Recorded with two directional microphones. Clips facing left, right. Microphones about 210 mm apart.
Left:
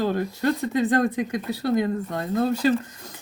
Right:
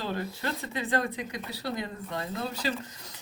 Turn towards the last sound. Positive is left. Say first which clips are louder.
# left 10 dB
turn(degrees=50)  # may be behind; listen again after turning